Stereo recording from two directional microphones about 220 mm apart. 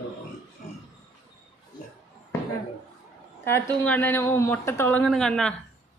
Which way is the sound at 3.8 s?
10° left (ahead or behind).